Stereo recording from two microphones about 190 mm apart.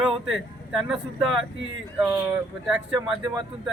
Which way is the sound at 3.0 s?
20° right (ahead or behind).